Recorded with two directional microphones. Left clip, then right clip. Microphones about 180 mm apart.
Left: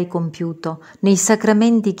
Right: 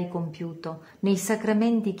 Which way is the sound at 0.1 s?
40° left (ahead or behind).